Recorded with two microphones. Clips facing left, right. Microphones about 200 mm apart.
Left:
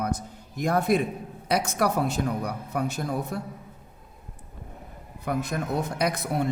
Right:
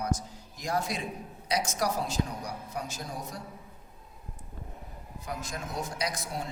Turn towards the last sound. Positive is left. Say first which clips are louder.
# left 8 dB
turn(degrees=60)  # may be behind; listen again after turning